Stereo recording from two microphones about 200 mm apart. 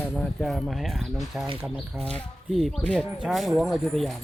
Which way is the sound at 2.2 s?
Centre (ahead or behind).